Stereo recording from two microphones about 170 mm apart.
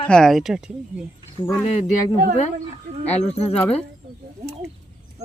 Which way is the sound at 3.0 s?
40° left (ahead or behind).